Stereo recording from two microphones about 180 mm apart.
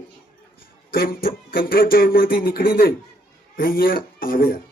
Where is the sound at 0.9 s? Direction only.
55° left (ahead or behind).